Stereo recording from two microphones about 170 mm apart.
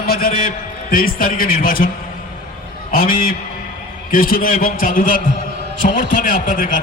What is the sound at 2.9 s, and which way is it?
A man's voice, 60° left (ahead or behind).